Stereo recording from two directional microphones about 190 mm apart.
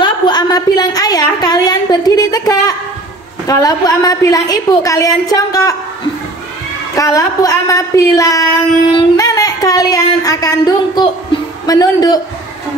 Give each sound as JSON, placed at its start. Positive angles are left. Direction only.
{"t": 0.0, "sound": "a woman's voice", "side_deg": 20}
{"t": 7.0, "sound": "a woman's voice", "side_deg": 20}